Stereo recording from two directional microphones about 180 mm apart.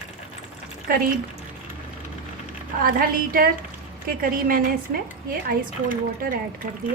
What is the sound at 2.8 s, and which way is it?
A woman's voice, 55° right (ahead or behind).